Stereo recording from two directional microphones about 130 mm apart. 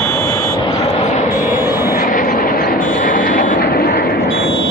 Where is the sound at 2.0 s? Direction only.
90° left.